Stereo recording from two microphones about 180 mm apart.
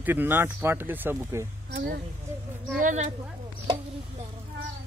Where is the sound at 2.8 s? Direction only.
45° right (ahead or behind).